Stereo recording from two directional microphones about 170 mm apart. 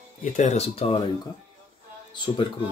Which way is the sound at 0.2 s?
45° left (ahead or behind).